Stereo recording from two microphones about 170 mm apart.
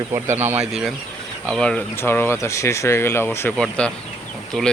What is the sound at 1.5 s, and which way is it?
Speech, 5° left (ahead or behind).